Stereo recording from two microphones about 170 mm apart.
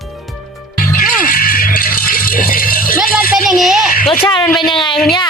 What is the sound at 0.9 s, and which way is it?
Rattle, 55° left (ahead or behind).